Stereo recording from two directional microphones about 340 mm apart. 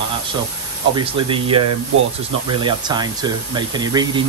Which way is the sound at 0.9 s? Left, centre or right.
Centre.